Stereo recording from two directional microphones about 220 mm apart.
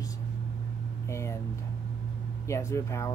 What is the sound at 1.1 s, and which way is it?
Speech, 10° left (ahead or behind).